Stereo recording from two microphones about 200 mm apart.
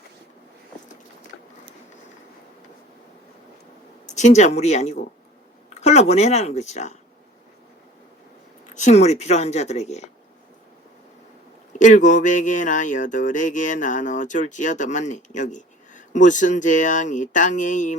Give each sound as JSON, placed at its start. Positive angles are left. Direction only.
{"t": 4.0, "sound": "speech", "side_deg": 35}
{"t": 8.7, "sound": "speech", "side_deg": 35}
{"t": 11.7, "sound": "speech", "side_deg": 40}